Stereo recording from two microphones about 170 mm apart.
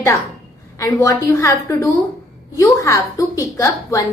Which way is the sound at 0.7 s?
20° left (ahead or behind).